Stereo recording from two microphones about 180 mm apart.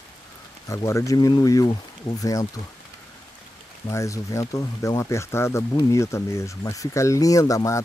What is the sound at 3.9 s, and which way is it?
Speech, 15° left (ahead or behind).